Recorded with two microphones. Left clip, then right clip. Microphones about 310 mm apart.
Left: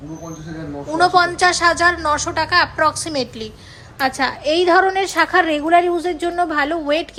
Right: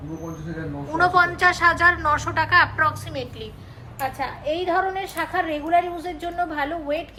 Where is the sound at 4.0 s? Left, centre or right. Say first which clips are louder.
Left 8 dB; left.